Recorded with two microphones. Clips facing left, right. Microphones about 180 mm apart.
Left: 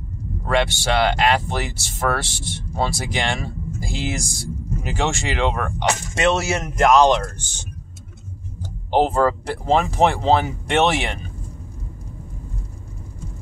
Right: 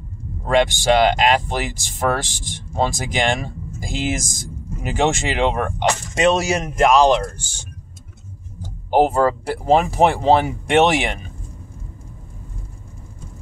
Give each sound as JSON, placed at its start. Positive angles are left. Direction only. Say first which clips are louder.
{"t": 0.5, "sound": "speech", "louder": "right 4 dB", "side_deg": -15}
{"t": 8.9, "sound": "speech", "louder": "right 2 dB", "side_deg": -10}